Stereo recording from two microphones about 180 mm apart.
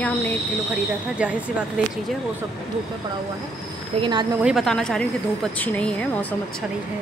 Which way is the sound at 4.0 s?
20° right (ahead or behind).